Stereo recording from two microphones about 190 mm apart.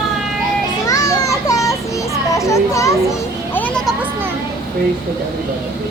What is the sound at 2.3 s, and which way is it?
A child's voice, 15° left (ahead or behind).